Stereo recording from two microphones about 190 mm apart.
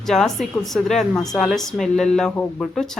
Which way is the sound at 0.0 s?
Centre (ahead or behind).